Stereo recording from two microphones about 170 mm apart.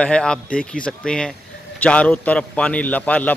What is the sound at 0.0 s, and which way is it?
A man's voice, 5° left (ahead or behind).